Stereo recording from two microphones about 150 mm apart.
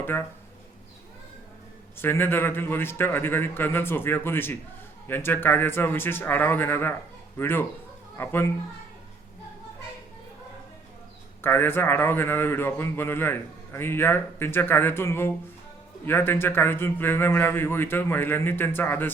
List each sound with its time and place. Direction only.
0.0 s a man's voice: 15° left (ahead or behind)
2.0 s a man's voice: 15° left (ahead or behind)
11.4 s a man's voice: 15° left (ahead or behind)